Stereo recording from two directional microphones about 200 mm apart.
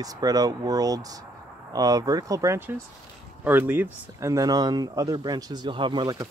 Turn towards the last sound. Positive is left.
turn(degrees=-20)  # may be behind; listen again after turning